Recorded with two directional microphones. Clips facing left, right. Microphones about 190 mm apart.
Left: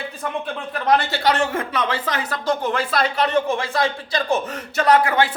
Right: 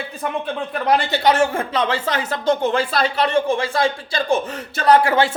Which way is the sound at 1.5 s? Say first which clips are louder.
Right 2 dB; 30° right (ahead or behind).